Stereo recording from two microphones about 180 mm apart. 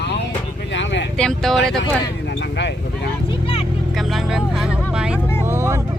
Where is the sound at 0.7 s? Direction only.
90° left.